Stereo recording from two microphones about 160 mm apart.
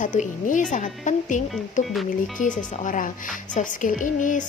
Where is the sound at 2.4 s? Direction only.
50° left (ahead or behind).